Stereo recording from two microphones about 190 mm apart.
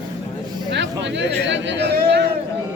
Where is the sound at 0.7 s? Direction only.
70° right (ahead or behind).